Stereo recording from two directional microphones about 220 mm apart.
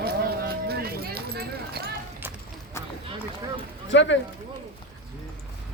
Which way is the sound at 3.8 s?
55° left (ahead or behind).